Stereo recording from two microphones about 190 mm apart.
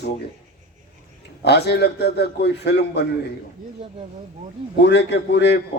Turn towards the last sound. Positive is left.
turn(degrees=65)  # may be behind; listen again after turning